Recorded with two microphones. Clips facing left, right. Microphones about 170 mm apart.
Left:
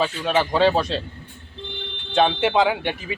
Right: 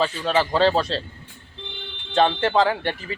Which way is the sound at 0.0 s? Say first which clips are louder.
Even; 10° left (ahead or behind).